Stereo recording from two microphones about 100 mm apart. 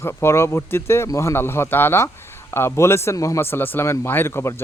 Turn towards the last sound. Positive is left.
turn(degrees=25)  # may be behind; listen again after turning